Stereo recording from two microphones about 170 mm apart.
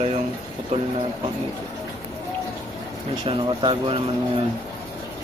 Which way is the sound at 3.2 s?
30° right (ahead or behind).